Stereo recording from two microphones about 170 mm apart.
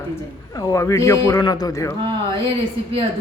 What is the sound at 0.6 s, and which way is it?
Speech, 20° left (ahead or behind).